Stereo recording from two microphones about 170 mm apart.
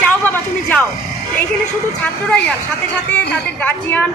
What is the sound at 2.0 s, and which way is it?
Speech, 5° left (ahead or behind).